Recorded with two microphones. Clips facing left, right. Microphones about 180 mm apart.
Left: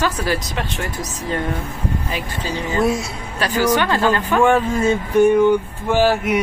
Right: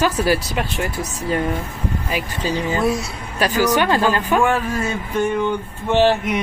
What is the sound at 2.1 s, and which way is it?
Speech, 10° right (ahead or behind).